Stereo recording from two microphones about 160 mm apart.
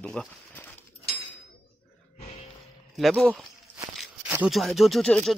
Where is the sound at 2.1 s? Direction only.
40° left (ahead or behind).